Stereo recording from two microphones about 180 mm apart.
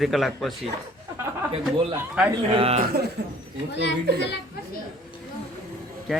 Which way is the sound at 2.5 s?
30° right (ahead or behind).